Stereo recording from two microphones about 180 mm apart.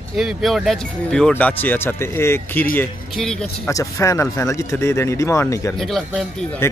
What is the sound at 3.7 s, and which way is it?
Speech, 20° left (ahead or behind).